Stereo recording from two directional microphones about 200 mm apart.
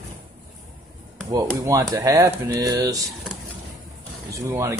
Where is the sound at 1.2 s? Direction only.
20° right (ahead or behind).